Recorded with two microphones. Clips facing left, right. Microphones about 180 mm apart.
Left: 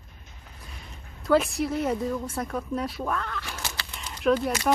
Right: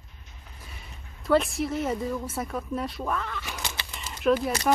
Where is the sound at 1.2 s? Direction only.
Centre (ahead or behind).